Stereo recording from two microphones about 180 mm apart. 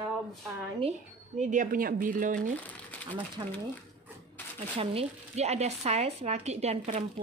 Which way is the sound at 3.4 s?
20° right (ahead or behind).